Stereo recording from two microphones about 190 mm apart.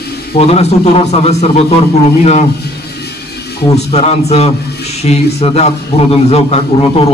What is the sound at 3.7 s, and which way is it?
A man's voice, 35° left (ahead or behind).